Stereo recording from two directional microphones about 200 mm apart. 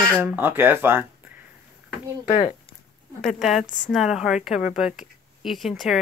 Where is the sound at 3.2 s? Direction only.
Centre (ahead or behind).